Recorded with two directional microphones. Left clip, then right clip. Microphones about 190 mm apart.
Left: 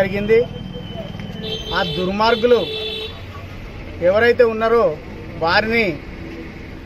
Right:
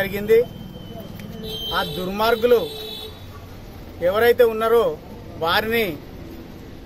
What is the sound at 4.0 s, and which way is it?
Speech, 20° right (ahead or behind).